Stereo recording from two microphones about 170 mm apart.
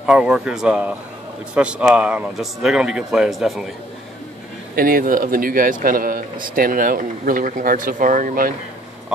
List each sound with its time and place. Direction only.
0.0 s speech: 5° right (ahead or behind)
4.7 s speech: 55° right (ahead or behind)